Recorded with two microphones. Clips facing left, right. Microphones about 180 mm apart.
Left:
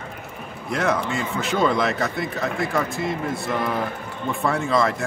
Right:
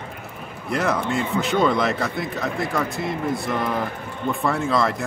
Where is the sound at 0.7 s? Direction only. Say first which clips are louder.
Even; centre (ahead or behind).